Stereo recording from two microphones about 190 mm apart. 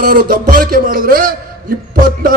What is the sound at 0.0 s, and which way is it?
A man's voice, 55° right (ahead or behind).